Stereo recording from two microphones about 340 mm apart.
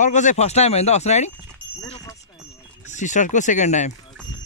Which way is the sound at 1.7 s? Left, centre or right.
Centre.